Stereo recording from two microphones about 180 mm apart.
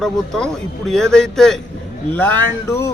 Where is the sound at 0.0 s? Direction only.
5° left (ahead or behind).